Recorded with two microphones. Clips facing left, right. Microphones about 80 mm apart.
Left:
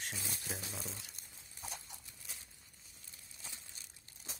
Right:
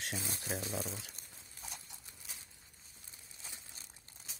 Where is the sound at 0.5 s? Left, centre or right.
Right.